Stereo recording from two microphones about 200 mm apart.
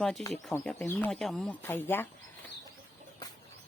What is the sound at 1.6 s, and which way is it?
Speech, 10° left (ahead or behind).